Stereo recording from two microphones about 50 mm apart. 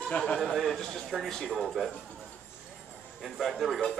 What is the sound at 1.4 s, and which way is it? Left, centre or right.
Speech, centre.